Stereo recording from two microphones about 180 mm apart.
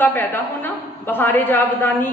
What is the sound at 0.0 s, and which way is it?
A woman's voice, 10° left (ahead or behind).